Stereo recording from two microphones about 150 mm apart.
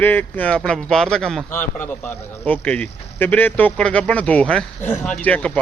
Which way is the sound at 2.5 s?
10° left (ahead or behind).